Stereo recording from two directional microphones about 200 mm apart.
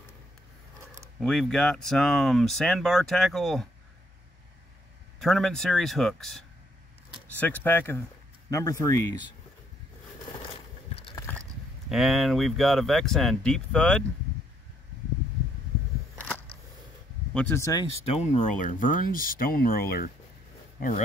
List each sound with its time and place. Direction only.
1.2 s speech: centre (ahead or behind)
5.2 s speech: 5° left (ahead or behind)
11.1 s a sound: 10° left (ahead or behind)
11.9 s speech: centre (ahead or behind)
17.3 s speech: 10° left (ahead or behind)
18.1 s speech: 35° left (ahead or behind)